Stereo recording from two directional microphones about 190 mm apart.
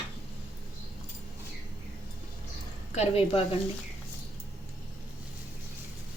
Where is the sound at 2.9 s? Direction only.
35° left (ahead or behind).